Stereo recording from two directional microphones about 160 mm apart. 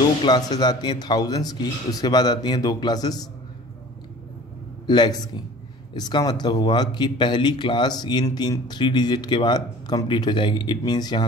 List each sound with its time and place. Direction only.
0.0 s speech: 25° left (ahead or behind)
4.8 s speech: 25° left (ahead or behind)